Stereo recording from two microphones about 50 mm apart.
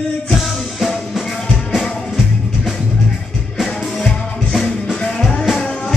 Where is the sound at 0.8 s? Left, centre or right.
Centre.